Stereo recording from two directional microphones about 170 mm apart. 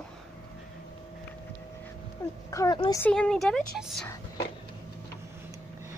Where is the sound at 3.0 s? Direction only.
5° left (ahead or behind).